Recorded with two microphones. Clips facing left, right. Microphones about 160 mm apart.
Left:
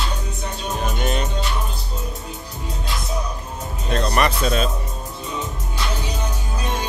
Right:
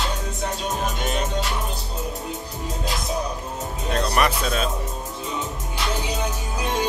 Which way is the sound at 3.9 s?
5° right (ahead or behind).